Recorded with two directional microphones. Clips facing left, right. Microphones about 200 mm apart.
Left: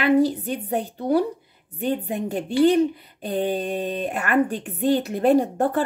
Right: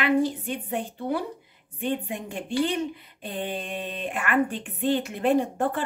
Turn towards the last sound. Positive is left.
turn(degrees=40)  # may be behind; listen again after turning